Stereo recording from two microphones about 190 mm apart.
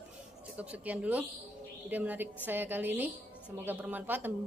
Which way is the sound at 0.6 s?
10° right (ahead or behind).